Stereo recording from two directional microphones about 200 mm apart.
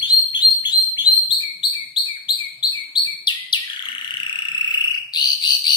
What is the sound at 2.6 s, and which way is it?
Chirp, 20° left (ahead or behind).